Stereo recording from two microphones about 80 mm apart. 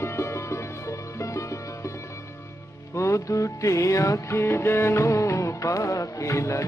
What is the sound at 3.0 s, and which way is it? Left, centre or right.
Music, left.